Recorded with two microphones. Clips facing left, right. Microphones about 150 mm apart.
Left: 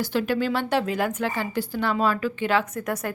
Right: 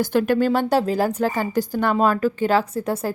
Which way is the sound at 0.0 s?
50° right (ahead or behind).